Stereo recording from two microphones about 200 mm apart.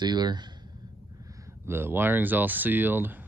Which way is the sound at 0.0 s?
20° right (ahead or behind).